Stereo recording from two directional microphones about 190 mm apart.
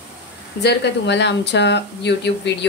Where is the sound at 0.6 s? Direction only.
65° left (ahead or behind).